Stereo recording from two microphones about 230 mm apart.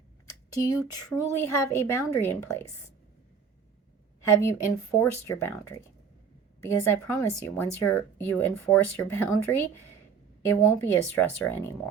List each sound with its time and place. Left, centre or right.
0.5 s speech: centre
4.4 s speech: centre